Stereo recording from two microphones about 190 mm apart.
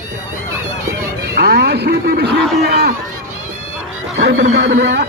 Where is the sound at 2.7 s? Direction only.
55° right (ahead or behind).